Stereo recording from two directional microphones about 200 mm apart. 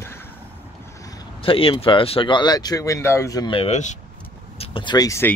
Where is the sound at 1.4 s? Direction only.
25° left (ahead or behind).